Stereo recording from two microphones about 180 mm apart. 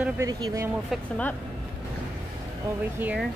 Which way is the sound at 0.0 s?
20° right (ahead or behind).